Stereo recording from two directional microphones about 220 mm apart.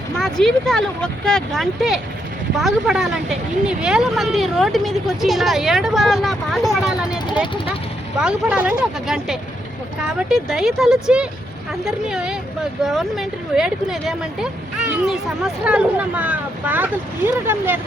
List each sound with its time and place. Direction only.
0.2 s speech: centre (ahead or behind)
7.4 s speech: 20° left (ahead or behind)
8.2 s speech: 5° right (ahead or behind)